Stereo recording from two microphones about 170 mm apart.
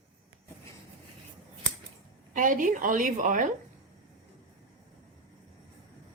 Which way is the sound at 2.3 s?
50° right (ahead or behind).